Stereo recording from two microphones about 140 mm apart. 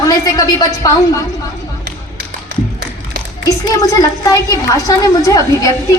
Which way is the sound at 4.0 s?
25° left (ahead or behind).